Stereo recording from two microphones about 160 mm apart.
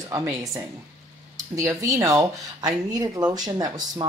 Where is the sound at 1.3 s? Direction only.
20° right (ahead or behind).